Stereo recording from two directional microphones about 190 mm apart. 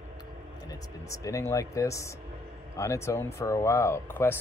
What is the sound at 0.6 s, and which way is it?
Speech, 15° left (ahead or behind).